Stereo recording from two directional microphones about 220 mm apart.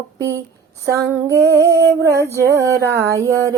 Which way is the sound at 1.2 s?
10° right (ahead or behind).